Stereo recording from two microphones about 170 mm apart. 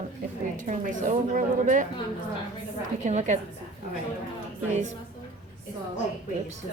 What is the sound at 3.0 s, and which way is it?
Speech, 45° right (ahead or behind).